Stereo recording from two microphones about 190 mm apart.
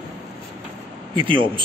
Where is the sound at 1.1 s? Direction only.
25° right (ahead or behind).